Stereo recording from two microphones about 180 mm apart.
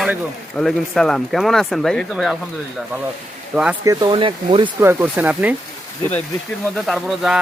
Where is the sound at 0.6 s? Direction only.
Centre (ahead or behind).